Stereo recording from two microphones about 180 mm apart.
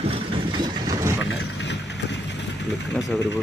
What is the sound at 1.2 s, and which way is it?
Vehicle, 75° left (ahead or behind).